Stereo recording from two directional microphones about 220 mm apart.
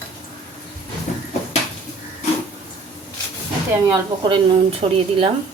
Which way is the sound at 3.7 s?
20° right (ahead or behind).